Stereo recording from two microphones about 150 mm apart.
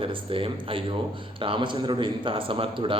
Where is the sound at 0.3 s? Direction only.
35° right (ahead or behind).